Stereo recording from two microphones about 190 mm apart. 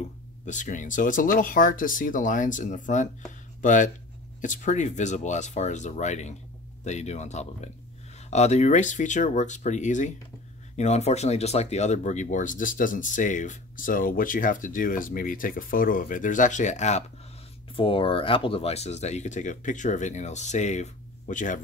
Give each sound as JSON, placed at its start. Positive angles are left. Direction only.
{"t": 0.5, "sound": "speech", "side_deg": 40}